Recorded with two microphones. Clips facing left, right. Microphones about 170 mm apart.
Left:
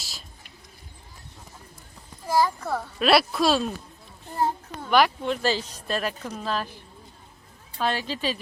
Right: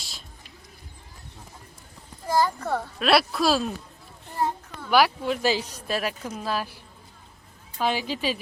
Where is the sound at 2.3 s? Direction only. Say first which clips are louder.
Even; 5° left (ahead or behind).